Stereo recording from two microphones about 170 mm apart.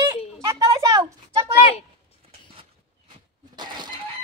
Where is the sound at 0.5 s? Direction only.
20° right (ahead or behind).